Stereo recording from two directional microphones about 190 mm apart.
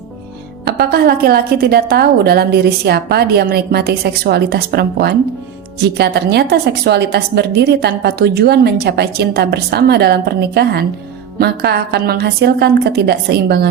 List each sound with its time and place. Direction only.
0.7 s a woman's voice: 55° right (ahead or behind)